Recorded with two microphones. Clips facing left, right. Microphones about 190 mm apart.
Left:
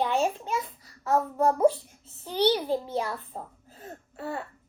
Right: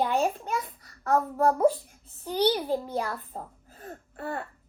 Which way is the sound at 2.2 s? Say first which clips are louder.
Left 1 dB; 10° right (ahead or behind).